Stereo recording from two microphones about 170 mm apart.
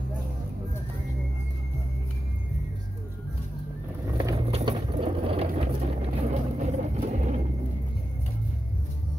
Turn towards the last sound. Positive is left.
turn(degrees=-45)  # may be behind; listen again after turning